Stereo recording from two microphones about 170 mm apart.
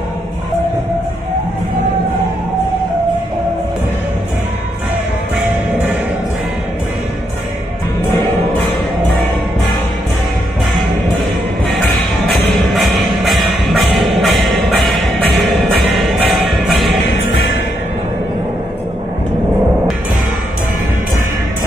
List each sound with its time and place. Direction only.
12.7 s music: centre (ahead or behind)
15.9 s music: centre (ahead or behind)